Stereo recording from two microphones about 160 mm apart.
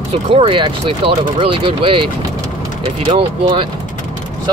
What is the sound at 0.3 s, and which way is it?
Speech, 35° right (ahead or behind).